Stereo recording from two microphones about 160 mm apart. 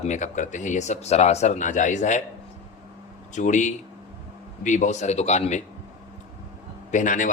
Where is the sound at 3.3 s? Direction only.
50° left (ahead or behind).